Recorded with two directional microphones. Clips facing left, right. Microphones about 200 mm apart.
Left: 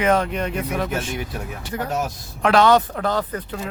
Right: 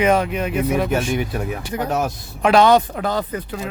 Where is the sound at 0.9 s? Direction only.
60° right (ahead or behind).